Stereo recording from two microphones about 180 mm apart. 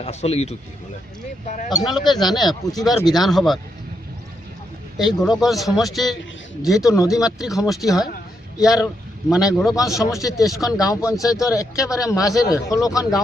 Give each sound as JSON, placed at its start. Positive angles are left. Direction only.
{"t": 0.0, "sound": "speech", "side_deg": 35}
{"t": 1.7, "sound": "speech", "side_deg": 25}
{"t": 2.5, "sound": "speech", "side_deg": 0}
{"t": 4.9, "sound": "speech", "side_deg": 0}
{"t": 6.7, "sound": "speech", "side_deg": 15}
{"t": 7.3, "sound": "speech", "side_deg": 0}
{"t": 9.7, "sound": "speech", "side_deg": 20}
{"t": 10.4, "sound": "speech", "side_deg": 0}
{"t": 10.8, "sound": "speech", "side_deg": 20}